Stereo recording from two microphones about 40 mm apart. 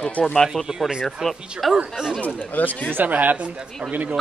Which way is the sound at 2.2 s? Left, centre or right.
Left.